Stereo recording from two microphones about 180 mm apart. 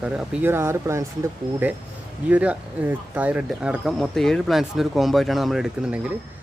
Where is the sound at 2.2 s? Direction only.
10° right (ahead or behind).